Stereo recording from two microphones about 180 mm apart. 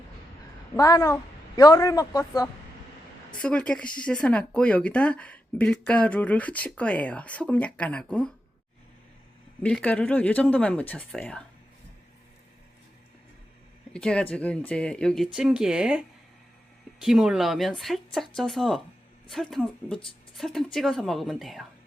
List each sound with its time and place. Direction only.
0.8 s a woman's voice: 20° left (ahead or behind)
3.4 s speech: 5° left (ahead or behind)
9.6 s speech: 5° left (ahead or behind)
13.9 s speech: 5° left (ahead or behind)